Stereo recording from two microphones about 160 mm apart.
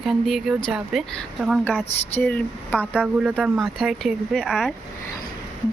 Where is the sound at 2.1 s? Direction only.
10° left (ahead or behind).